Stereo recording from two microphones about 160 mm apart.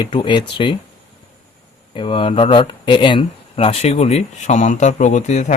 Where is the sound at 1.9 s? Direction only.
30° left (ahead or behind).